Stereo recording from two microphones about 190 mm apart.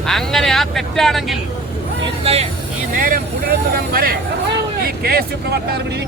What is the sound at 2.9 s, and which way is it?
Speech, 45° right (ahead or behind).